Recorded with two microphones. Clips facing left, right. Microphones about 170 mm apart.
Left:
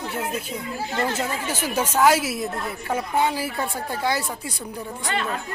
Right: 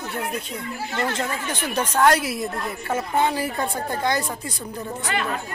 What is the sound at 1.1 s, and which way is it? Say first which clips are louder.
A woman's voice: left 1 dB; 10° left (ahead or behind).